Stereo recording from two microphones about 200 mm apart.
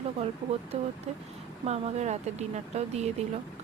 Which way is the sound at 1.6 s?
30° right (ahead or behind).